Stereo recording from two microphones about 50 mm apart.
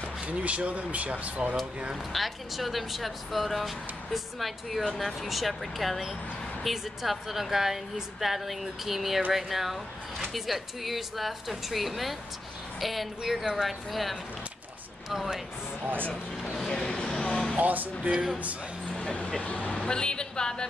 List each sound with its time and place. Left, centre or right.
0.2 s speech: right
2.1 s speech: centre
16.0 s speech: left
16.6 s vehicle: centre
17.6 s speech: right
19.4 s speech: left